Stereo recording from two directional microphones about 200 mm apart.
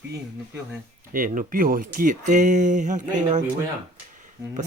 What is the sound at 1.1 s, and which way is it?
Speech, 40° right (ahead or behind).